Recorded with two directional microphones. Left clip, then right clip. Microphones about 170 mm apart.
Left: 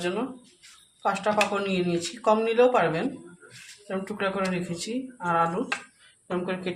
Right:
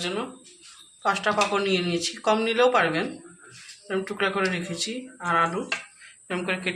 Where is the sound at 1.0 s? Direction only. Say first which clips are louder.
Right 1 dB; 30° left (ahead or behind).